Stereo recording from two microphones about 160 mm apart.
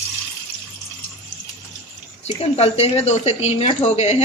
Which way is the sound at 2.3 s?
40° left (ahead or behind).